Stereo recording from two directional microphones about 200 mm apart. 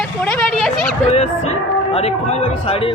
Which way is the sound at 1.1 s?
30° left (ahead or behind).